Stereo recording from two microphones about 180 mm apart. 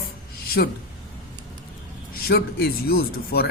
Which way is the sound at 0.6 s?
65° left (ahead or behind).